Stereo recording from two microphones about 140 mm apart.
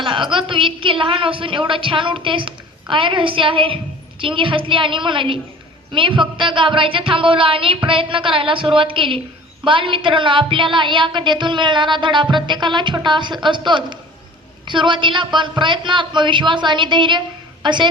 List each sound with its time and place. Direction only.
0.0 s a woman's voice: 35° right (ahead or behind)